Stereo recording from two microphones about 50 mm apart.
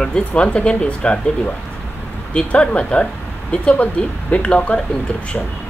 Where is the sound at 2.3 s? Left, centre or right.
Left.